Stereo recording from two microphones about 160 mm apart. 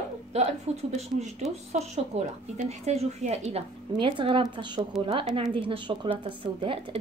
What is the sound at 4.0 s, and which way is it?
Speech, 30° right (ahead or behind).